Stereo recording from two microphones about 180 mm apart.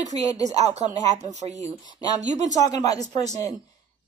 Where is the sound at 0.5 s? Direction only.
40° right (ahead or behind).